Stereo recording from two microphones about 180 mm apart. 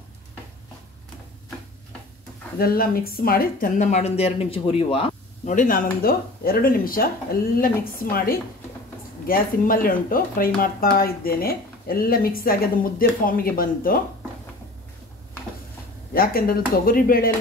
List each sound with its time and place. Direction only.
2.6 s speech: 55° left (ahead or behind); by 5.5 s 30° left (ahead or behind)
5.5 s speech: 50° left (ahead or behind)
16.1 s speech: 55° left (ahead or behind)